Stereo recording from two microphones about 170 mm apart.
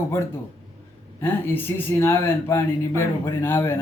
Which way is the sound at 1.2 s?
10° left (ahead or behind).